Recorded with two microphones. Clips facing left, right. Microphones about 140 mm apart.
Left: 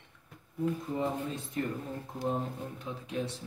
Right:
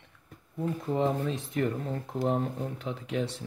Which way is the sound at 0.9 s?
90° right.